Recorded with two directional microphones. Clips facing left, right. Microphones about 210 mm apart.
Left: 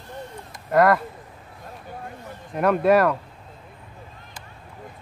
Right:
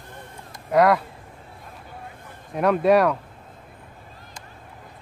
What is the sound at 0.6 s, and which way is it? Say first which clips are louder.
Speech: even; centre (ahead or behind).